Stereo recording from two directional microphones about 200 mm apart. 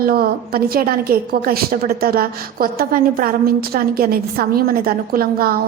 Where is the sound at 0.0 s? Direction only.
50° right (ahead or behind).